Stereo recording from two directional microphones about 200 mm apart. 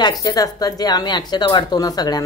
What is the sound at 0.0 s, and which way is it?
A woman's voice, 20° left (ahead or behind).